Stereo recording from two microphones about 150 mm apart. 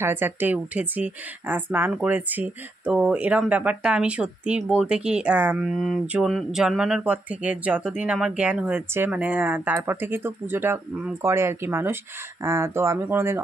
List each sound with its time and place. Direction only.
0.0 s a woman's voice: 15° right (ahead or behind)